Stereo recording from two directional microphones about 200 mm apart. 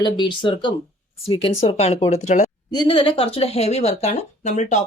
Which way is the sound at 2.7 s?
25° left (ahead or behind).